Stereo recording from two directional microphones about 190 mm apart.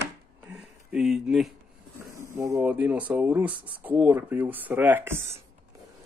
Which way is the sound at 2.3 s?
15° right (ahead or behind).